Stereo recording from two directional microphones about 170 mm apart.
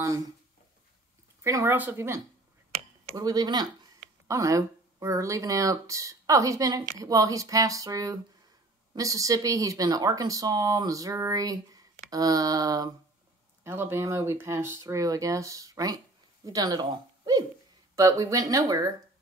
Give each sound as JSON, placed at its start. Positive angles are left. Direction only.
{"t": 1.4, "sound": "speech", "side_deg": -15}